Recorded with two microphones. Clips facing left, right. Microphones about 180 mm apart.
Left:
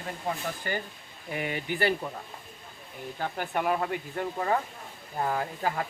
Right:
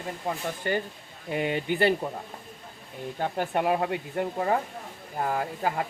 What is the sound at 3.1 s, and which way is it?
Speech, 25° right (ahead or behind).